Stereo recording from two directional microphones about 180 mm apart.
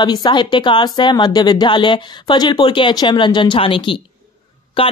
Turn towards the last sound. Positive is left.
turn(degrees=30)  # may be behind; listen again after turning